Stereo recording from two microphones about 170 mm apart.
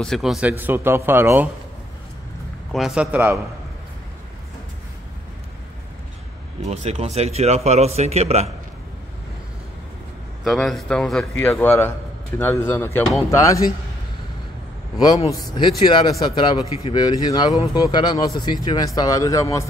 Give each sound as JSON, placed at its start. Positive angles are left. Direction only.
{"t": 0.0, "sound": "speech", "side_deg": 0}
{"t": 2.7, "sound": "speech", "side_deg": -5}
{"t": 6.7, "sound": "a man's voice", "side_deg": -40}
{"t": 10.4, "sound": "a man's voice", "side_deg": 0}
{"t": 15.2, "sound": "a man's voice", "side_deg": 25}